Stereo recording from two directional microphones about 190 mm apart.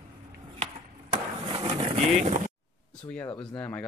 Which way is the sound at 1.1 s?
25° right (ahead or behind).